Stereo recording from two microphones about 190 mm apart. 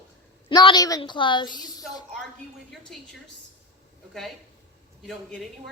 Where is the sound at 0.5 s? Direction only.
25° left (ahead or behind).